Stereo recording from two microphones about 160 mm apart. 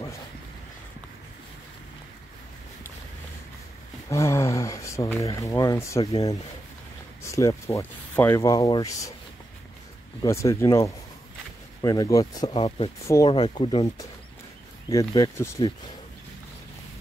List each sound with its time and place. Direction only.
4.1 s speech: 20° left (ahead or behind)
10.2 s speech: 20° left (ahead or behind)
12.5 s speech: 35° left (ahead or behind)
13.0 s speech: 20° left (ahead or behind)
13.3 s speech: 30° left (ahead or behind)